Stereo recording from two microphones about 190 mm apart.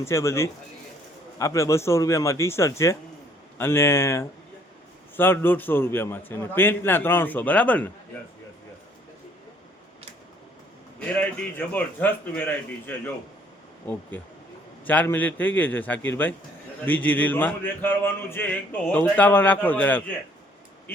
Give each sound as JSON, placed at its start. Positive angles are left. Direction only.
{"t": 0.0, "sound": "a man's voice", "side_deg": 15}
{"t": 11.1, "sound": "a man's voice", "side_deg": 10}
{"t": 14.8, "sound": "a man's voice", "side_deg": 10}